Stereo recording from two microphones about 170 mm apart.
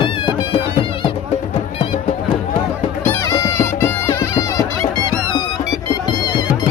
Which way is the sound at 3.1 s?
15° left (ahead or behind).